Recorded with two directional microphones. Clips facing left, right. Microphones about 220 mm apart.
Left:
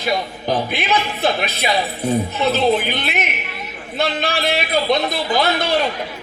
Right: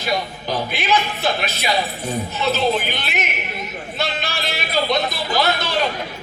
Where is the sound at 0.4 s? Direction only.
55° left (ahead or behind).